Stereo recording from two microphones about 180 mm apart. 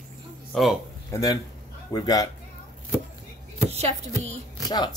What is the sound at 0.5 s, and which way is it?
Speech, 5° left (ahead or behind).